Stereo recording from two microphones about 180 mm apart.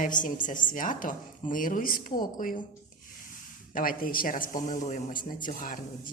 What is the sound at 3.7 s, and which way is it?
A woman's voice, 50° left (ahead or behind).